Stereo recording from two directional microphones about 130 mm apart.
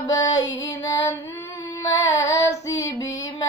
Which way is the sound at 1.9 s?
25° left (ahead or behind).